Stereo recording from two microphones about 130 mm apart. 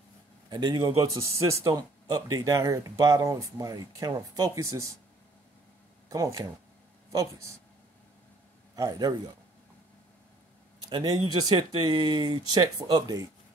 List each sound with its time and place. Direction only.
0.5 s speech: 35° right (ahead or behind)
6.0 s speech: 25° right (ahead or behind)
8.7 s a man's voice: 30° right (ahead or behind)
10.9 s speech: 35° right (ahead or behind)